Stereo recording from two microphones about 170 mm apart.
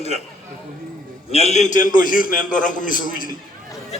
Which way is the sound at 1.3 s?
40° left (ahead or behind).